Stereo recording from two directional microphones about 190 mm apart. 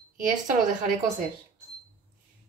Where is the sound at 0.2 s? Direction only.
40° right (ahead or behind).